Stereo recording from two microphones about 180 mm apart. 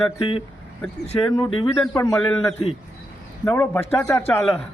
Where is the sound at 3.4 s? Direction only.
15° left (ahead or behind).